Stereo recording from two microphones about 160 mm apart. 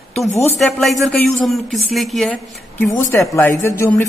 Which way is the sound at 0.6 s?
Centre (ahead or behind).